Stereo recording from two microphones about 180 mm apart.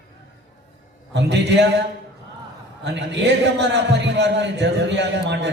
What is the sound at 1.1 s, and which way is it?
Speech, 70° right (ahead or behind).